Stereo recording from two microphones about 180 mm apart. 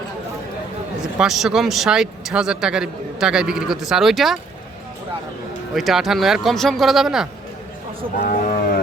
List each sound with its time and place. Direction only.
1.2 s a man's voice: centre (ahead or behind)
5.7 s a man's voice: centre (ahead or behind)
8.2 s cattle: 50° left (ahead or behind)